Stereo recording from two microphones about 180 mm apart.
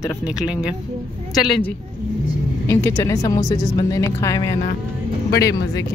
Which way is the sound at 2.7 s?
15° left (ahead or behind).